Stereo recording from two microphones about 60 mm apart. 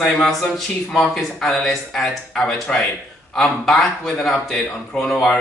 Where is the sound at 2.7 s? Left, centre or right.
Centre.